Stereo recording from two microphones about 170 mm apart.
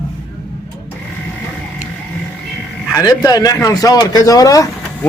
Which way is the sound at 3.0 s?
20° left (ahead or behind).